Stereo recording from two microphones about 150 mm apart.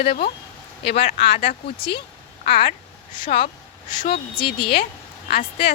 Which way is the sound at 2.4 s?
70° left (ahead or behind).